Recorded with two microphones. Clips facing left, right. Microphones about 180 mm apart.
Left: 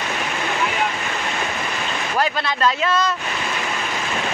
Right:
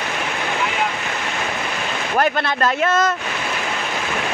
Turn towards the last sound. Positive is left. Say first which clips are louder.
# right 2 dB
turn(degrees=-50)  # may be behind; listen again after turning